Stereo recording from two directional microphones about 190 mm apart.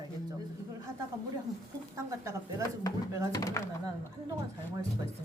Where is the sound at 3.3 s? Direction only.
15° left (ahead or behind).